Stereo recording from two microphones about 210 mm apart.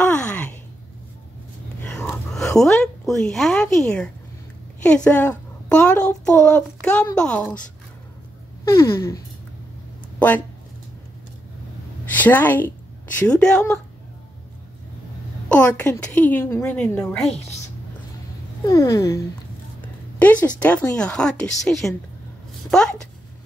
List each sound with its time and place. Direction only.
0.0 s a sound: 5° left (ahead or behind)
2.3 s a woman's voice: centre (ahead or behind)
8.6 s a woman's voice: 15° left (ahead or behind)
12.1 s a woman's voice: 10° left (ahead or behind)
15.4 s a woman's voice: 5° left (ahead or behind)
18.7 s a woman's voice: 15° left (ahead or behind)